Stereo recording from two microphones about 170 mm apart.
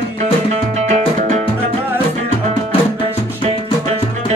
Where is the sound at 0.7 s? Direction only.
45° right (ahead or behind).